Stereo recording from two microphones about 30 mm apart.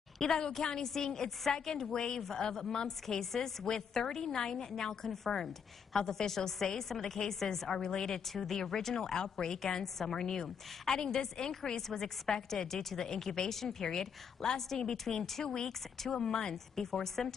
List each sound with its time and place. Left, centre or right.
0.2 s a woman's voice: centre
7.7 s a woman's voice: left
8.6 s a woman's voice: centre
8.9 s a woman's voice: centre
17.0 s a woman's voice: centre